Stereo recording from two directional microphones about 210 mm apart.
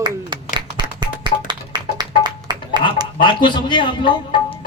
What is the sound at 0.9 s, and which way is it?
Music, 20° right (ahead or behind).